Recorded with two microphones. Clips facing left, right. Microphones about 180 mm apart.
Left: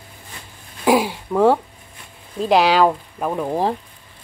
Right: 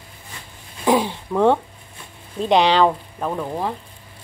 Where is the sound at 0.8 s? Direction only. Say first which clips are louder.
Left 2 dB; 10° left (ahead or behind).